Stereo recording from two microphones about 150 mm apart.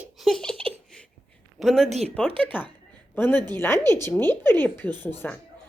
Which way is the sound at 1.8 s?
45° right (ahead or behind).